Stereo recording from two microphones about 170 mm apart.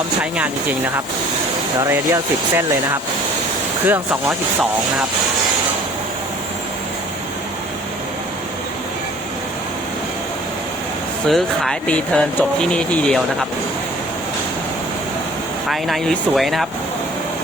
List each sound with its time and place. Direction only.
0.2 s speech: 10° right (ahead or behind)
1.8 s speech: 15° right (ahead or behind)
11.3 s speech: centre (ahead or behind)
15.7 s speech: centre (ahead or behind)